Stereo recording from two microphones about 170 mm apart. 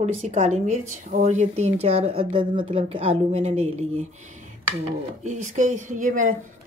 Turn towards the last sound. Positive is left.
turn(degrees=-50)  # may be behind; listen again after turning